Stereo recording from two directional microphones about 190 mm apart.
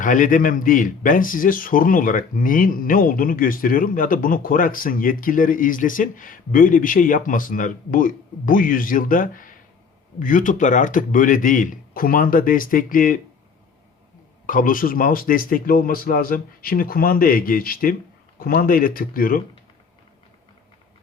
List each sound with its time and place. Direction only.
0.0 s speech: 45° left (ahead or behind)
14.4 s speech: 45° left (ahead or behind)